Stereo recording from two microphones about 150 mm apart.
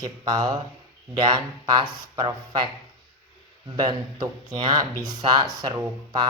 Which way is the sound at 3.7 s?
30° right (ahead or behind).